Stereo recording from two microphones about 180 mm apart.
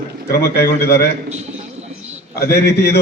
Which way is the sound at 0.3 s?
60° left (ahead or behind).